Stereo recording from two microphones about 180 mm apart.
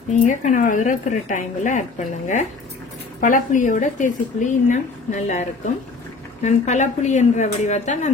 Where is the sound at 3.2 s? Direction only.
45° left (ahead or behind).